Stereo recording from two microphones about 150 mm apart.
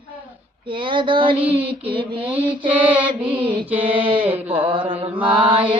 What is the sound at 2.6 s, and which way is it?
Mantra, 10° right (ahead or behind).